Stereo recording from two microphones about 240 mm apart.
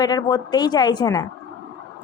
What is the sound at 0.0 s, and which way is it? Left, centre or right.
Speech, centre.